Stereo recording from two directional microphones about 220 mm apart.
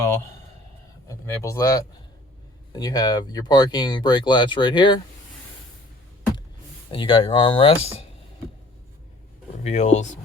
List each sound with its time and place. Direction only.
1.0 s speech: 15° left (ahead or behind)
6.9 s speech: 25° left (ahead or behind)
9.6 s speech: 30° left (ahead or behind)